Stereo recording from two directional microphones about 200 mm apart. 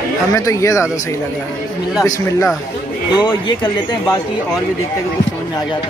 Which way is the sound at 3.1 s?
20° left (ahead or behind).